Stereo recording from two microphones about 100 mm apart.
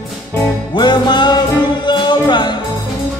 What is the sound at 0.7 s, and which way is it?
Music, 50° left (ahead or behind).